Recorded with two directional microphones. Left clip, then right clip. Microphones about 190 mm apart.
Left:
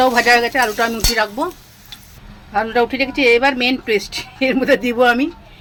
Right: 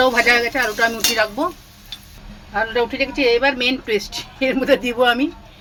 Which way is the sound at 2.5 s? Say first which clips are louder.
Left 3 dB; 25° left (ahead or behind).